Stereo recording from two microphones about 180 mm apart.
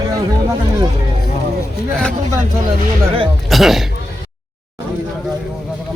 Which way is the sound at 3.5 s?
Centre (ahead or behind).